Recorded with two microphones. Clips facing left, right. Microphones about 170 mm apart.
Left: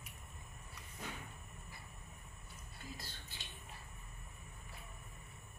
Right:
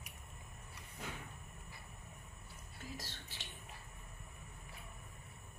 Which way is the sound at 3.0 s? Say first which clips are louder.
Right 2 dB; 90° right.